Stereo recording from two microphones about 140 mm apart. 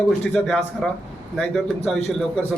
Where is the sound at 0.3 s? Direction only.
5° left (ahead or behind).